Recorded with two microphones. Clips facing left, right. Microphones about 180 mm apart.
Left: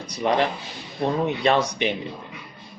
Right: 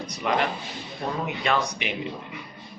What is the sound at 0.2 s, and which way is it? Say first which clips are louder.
A man's voice: left 4 dB; 30° left (ahead or behind).